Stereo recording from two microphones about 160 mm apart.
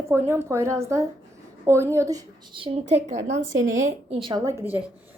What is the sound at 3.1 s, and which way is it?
Speech, 50° right (ahead or behind).